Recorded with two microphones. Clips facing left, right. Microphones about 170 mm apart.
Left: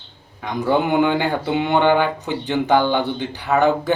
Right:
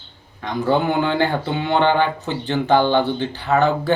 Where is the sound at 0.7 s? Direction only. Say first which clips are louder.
Left 2 dB; 15° left (ahead or behind).